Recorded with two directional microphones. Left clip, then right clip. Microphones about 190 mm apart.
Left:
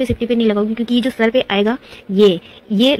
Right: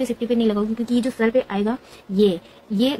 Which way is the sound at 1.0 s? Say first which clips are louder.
Left 5 dB; 35° left (ahead or behind).